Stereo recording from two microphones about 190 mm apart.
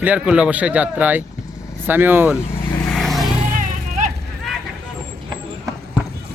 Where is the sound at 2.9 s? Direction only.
Centre (ahead or behind).